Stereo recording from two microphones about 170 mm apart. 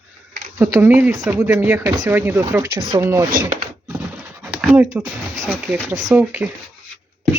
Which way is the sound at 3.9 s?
15° right (ahead or behind).